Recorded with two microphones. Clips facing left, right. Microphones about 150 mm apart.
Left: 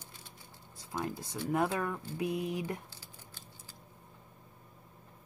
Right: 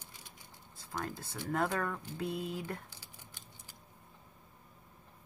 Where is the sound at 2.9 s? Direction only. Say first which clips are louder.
Left 2 dB; 15° right (ahead or behind).